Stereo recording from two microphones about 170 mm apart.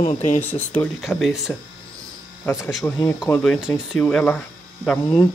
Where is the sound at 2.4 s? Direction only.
20° left (ahead or behind).